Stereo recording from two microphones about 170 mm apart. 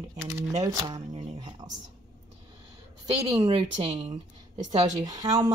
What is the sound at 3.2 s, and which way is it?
Speech, 35° right (ahead or behind).